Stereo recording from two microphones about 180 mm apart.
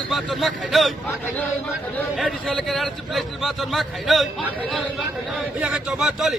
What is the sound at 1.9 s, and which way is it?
A man's voice, centre (ahead or behind).